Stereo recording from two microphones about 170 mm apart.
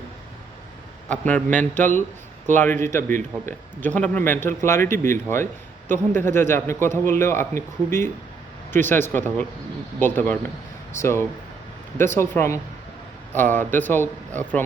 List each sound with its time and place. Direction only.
1.0 s a man's voice: 10° left (ahead or behind)